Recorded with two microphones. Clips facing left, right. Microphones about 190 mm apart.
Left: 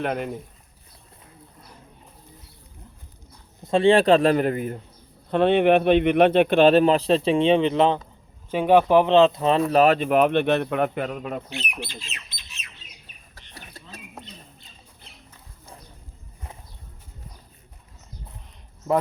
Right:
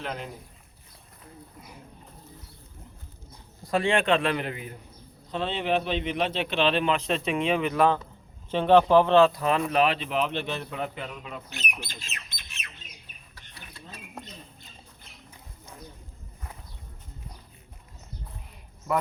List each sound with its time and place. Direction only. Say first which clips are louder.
0.0 s a man's voice: left 9 dB; 60° left (ahead or behind)
3.6 s a man's voice: left 8 dB; 25° left (ahead or behind); by 4.8 s 45° left (ahead or behind)
5.3 s speech: left 10 dB; 60° left (ahead or behind); by 8.0 s 20° left (ahead or behind)
8.4 s speech: left 2 dB; 10° left (ahead or behind); by 9.6 s 30° left (ahead or behind)
9.7 s a man's voice: left 7 dB; 45° left (ahead or behind)
11.8 s squawk: left 5 dB; 45° right (ahead or behind)
13.5 s a sound: left 4 dB; 45° left (ahead or behind)
14.2 s bird: right 2 dB; centre (ahead or behind)